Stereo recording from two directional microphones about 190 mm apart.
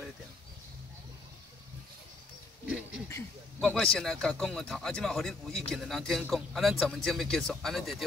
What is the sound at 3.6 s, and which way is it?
Speech, 5° left (ahead or behind).